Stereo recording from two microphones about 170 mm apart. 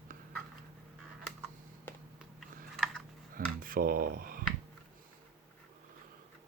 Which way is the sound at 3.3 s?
55° right (ahead or behind).